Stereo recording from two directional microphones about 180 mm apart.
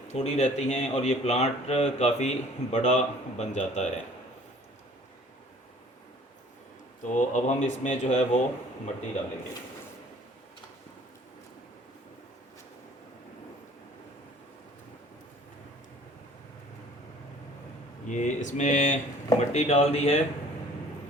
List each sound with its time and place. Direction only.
0.1 s speech: 40° left (ahead or behind)
7.1 s speech: 40° left (ahead or behind)
18.1 s speech: 45° left (ahead or behind)